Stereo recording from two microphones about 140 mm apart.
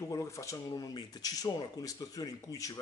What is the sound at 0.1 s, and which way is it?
Speech, 20° left (ahead or behind).